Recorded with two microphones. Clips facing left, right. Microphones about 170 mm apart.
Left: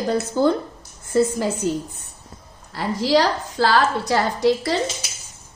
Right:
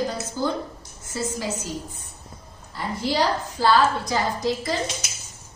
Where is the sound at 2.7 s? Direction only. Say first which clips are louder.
Left 6 dB; 90° left.